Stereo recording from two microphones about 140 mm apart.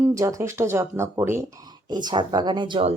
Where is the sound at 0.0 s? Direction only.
20° right (ahead or behind).